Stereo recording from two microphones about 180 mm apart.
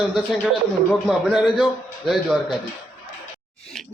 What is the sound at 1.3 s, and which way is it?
Speech, centre (ahead or behind).